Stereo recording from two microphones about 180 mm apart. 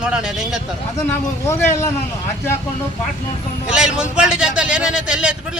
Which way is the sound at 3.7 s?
5° right (ahead or behind).